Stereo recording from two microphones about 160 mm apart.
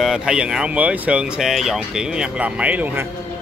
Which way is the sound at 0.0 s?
5° right (ahead or behind).